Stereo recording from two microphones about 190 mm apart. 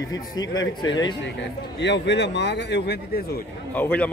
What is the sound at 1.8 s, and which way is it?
A man's voice, 65° left (ahead or behind).